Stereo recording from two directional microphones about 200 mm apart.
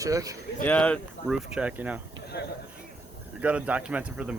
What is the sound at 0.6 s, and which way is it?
Speech, 5° left (ahead or behind).